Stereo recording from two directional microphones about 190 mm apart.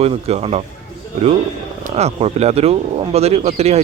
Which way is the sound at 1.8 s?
35° right (ahead or behind).